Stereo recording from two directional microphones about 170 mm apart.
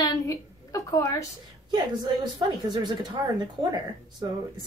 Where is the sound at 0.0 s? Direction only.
20° left (ahead or behind).